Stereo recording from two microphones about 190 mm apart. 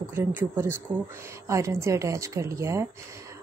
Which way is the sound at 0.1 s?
10° right (ahead or behind).